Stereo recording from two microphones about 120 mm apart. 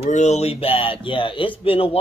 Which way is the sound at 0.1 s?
70° left (ahead or behind).